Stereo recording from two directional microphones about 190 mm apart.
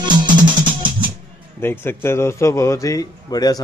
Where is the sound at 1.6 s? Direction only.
10° left (ahead or behind).